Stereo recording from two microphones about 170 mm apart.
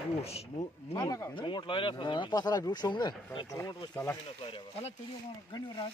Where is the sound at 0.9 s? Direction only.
20° left (ahead or behind).